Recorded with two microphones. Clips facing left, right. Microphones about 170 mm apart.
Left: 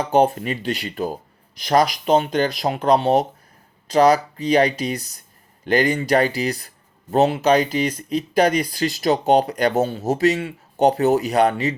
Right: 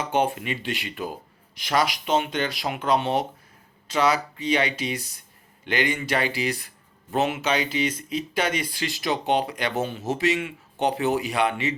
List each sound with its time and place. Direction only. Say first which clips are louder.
0.0 s speech: left 7 dB; 35° left (ahead or behind)